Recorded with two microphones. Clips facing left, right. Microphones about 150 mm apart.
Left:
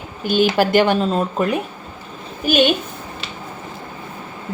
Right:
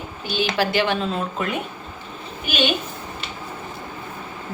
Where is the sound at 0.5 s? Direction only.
45° left (ahead or behind).